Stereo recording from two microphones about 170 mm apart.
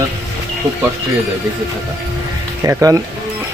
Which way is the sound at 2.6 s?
20° right (ahead or behind).